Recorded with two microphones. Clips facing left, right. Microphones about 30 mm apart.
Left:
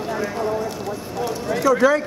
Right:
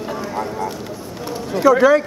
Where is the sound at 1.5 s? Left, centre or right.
Centre.